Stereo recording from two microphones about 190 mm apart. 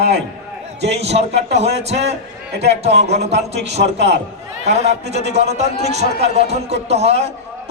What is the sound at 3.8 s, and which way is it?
Speech, 65° right (ahead or behind).